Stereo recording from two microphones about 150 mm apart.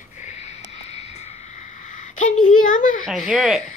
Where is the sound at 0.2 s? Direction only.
45° left (ahead or behind).